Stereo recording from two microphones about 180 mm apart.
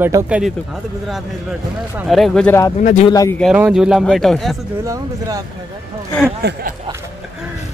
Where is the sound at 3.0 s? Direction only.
20° left (ahead or behind).